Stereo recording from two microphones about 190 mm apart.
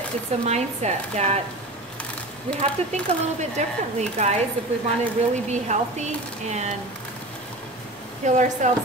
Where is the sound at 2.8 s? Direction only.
35° right (ahead or behind).